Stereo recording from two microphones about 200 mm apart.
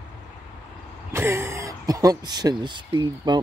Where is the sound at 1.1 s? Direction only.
15° right (ahead or behind).